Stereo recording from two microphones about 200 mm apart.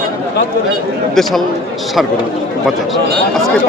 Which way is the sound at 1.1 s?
Centre (ahead or behind).